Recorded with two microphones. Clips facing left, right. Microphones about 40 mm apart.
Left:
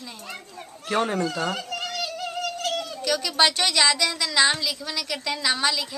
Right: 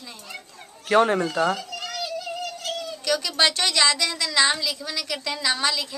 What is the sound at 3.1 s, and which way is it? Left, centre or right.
A woman's voice, centre.